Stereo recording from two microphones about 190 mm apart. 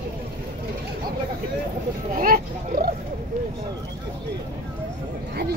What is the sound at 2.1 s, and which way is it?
Oink, 50° right (ahead or behind).